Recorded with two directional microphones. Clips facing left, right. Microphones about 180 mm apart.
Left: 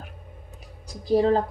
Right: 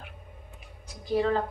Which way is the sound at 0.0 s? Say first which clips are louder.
Left 3 dB; 40° left (ahead or behind).